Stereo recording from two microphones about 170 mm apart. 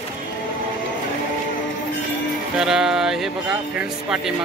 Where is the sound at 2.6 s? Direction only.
5° right (ahead or behind).